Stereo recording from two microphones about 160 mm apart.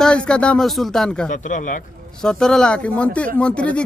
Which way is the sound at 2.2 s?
5° left (ahead or behind).